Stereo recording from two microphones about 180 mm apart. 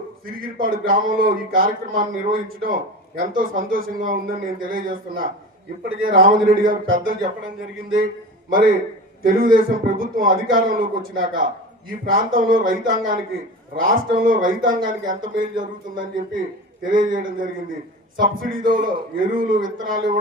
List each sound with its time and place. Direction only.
0.6 s a man's voice: 50° right (ahead or behind)
9.2 s a man's voice: 50° right (ahead or behind)